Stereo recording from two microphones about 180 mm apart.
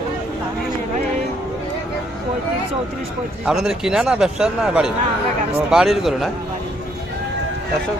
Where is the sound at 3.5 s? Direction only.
5° right (ahead or behind).